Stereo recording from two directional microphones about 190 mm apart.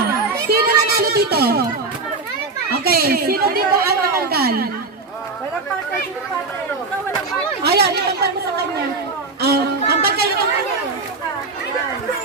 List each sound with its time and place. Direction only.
0.4 s a sound: 55° right (ahead or behind)
2.8 s speech: 55° right (ahead or behind)
7.6 s speech: 55° right (ahead or behind)
9.4 s speech: 55° right (ahead or behind)